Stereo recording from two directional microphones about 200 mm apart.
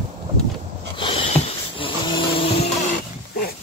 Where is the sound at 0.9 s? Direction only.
25° left (ahead or behind).